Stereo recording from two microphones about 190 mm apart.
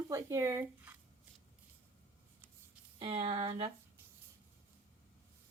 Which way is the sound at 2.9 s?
30° right (ahead or behind).